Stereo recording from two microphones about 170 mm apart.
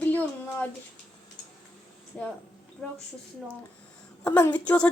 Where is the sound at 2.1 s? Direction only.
5° left (ahead or behind).